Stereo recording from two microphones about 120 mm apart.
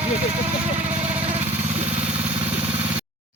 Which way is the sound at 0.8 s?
70° right (ahead or behind).